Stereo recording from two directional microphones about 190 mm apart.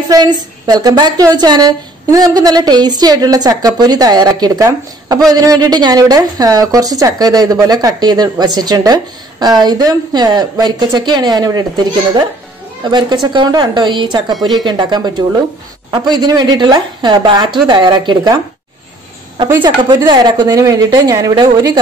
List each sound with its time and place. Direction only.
0.1 s a woman's voice: 20° right (ahead or behind)
19.6 s a woman's voice: 25° right (ahead or behind)